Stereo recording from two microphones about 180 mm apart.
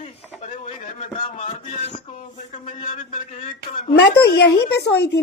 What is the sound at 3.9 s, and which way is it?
Speech, 65° left (ahead or behind).